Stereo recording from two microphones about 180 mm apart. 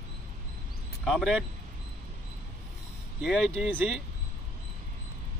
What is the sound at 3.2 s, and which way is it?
Speech, centre (ahead or behind).